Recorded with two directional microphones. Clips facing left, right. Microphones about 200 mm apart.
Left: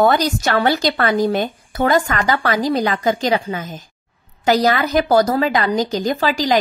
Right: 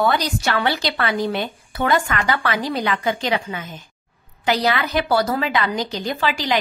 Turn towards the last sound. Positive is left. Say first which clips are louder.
# left 5 dB
turn(degrees=40)  # may be behind; listen again after turning